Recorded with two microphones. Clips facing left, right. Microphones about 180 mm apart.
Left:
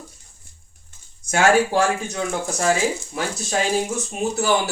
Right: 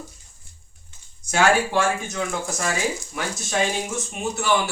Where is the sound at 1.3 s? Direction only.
40° left (ahead or behind).